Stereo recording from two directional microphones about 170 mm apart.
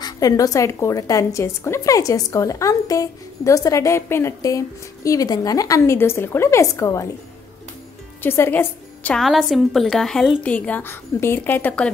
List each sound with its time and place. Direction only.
0.0 s a woman's voice: 20° left (ahead or behind)
8.2 s a woman's voice: 15° left (ahead or behind)